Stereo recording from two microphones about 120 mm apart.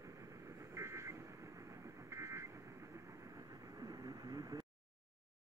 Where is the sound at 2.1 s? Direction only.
25° right (ahead or behind).